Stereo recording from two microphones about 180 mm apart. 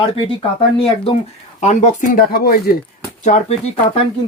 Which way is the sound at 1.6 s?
40° left (ahead or behind).